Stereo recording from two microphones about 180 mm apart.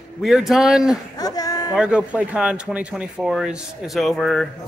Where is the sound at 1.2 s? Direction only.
20° left (ahead or behind).